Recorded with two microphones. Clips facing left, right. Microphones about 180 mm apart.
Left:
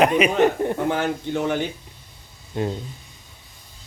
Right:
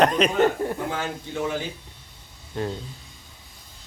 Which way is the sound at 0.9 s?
60° left (ahead or behind).